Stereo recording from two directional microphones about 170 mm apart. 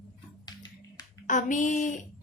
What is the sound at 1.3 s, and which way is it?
Speech, 50° left (ahead or behind).